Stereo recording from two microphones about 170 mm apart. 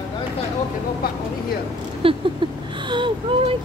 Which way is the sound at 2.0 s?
30° right (ahead or behind).